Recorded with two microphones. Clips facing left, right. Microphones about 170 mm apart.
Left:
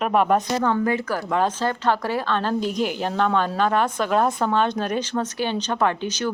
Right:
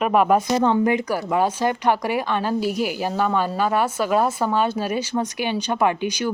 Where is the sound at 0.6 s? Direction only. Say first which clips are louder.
Right 3 dB; 15° right (ahead or behind).